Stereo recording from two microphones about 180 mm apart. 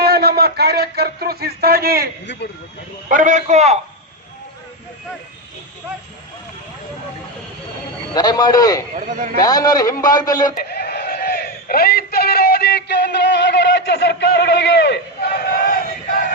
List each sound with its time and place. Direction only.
0.0 s speech: 60° right (ahead or behind)
2.2 s speech: 75° left (ahead or behind)
3.1 s a man's voice: 45° right (ahead or behind)
8.1 s a man's voice: 20° left (ahead or behind)
9.0 s speech: 45° right (ahead or behind)
9.4 s a man's voice: 20° left (ahead or behind)
10.6 s a man's voice: 60° left (ahead or behind)